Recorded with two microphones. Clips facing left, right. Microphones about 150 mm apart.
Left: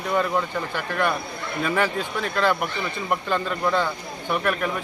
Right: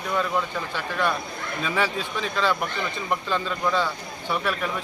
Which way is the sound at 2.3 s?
15° left (ahead or behind).